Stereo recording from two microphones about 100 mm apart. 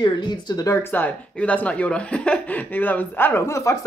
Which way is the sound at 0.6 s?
25° left (ahead or behind).